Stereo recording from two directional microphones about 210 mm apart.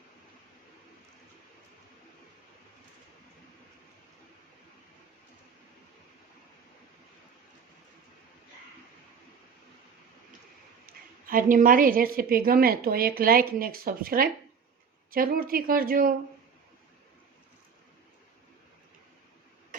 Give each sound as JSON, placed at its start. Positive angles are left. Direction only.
{"t": 10.8, "sound": "a woman's voice", "side_deg": -40}